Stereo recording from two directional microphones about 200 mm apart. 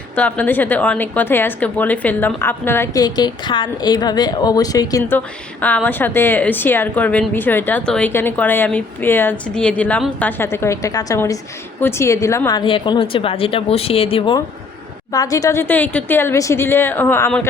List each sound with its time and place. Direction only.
0.2 s a woman's voice: 5° left (ahead or behind)